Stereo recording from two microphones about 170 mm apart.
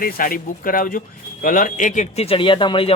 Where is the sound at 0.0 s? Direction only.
55° left (ahead or behind).